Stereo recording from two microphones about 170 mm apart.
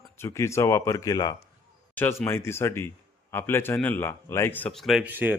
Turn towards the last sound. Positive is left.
turn(degrees=-10)  # may be behind; listen again after turning